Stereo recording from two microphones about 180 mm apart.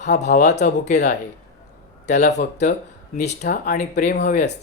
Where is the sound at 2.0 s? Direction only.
40° left (ahead or behind).